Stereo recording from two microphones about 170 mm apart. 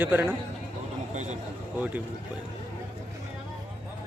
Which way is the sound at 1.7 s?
10° right (ahead or behind).